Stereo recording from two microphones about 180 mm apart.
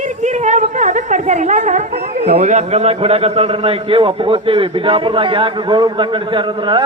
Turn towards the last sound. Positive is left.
turn(degrees=-25)  # may be behind; listen again after turning